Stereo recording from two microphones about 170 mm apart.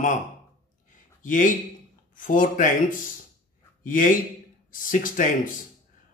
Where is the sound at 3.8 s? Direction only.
50° left (ahead or behind).